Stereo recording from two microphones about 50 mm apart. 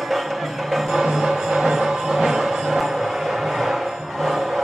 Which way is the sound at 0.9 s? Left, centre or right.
Centre.